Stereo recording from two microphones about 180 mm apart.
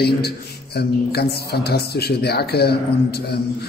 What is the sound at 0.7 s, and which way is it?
A man's voice, 60° left (ahead or behind).